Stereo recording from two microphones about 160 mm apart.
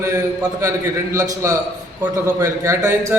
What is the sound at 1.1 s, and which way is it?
A man's voice, 20° right (ahead or behind).